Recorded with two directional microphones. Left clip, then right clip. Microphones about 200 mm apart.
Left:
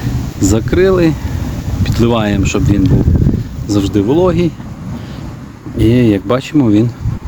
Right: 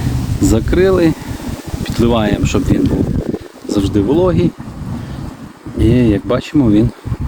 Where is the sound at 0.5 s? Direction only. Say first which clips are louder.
Left 1 dB; 5° left (ahead or behind).